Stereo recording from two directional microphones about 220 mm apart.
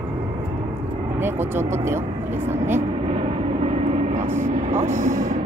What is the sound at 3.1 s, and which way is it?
Vehicle, 25° right (ahead or behind).